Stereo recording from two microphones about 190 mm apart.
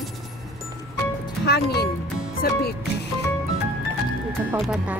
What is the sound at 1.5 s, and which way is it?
Music, 55° left (ahead or behind).